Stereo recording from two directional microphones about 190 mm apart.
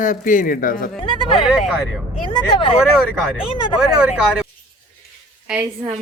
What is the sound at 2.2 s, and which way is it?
Speech, 25° left (ahead or behind).